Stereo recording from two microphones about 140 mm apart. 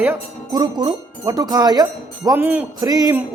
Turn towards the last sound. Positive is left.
turn(degrees=-25)  # may be behind; listen again after turning